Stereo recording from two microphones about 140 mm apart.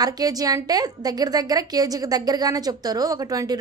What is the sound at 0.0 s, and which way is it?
A woman's voice, 25° right (ahead or behind).